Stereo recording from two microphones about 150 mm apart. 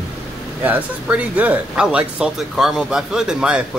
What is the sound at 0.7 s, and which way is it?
Speech, 10° right (ahead or behind).